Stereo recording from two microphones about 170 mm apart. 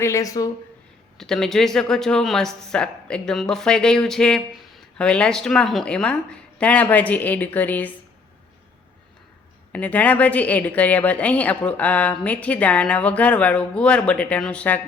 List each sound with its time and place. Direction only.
0.0 s speech: 20° left (ahead or behind)
1.2 s a woman's voice: 5° left (ahead or behind)
9.7 s a woman's voice: 10° left (ahead or behind)